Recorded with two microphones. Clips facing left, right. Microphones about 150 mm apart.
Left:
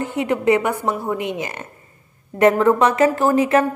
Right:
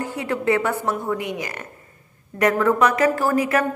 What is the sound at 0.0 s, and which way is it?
A woman's voice, 20° left (ahead or behind).